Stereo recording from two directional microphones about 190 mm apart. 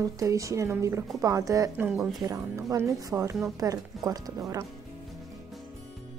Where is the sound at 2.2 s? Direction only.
20° right (ahead or behind).